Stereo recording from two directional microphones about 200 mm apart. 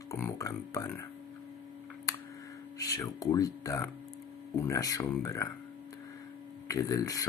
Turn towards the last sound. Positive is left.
turn(degrees=15)  # may be behind; listen again after turning